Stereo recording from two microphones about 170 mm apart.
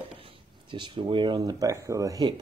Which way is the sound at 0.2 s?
30° right (ahead or behind).